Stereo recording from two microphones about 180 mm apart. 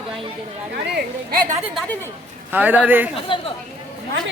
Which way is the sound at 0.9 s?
60° right (ahead or behind).